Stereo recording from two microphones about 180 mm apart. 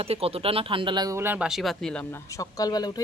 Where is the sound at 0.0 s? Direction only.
35° right (ahead or behind); by 2.2 s 5° left (ahead or behind).